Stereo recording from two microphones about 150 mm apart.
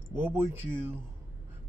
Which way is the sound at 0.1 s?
15° right (ahead or behind).